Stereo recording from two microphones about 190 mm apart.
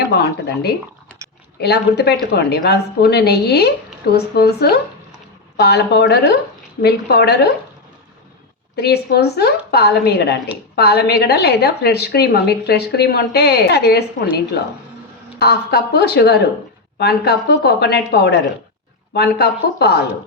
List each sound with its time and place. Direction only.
0.1 s a woman's voice: 60° left (ahead or behind)
8.7 s a woman's voice: 60° left (ahead or behind)